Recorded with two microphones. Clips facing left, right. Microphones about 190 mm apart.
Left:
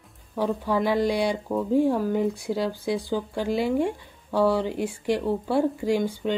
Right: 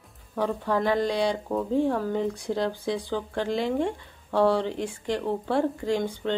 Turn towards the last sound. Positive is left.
turn(degrees=10)  # may be behind; listen again after turning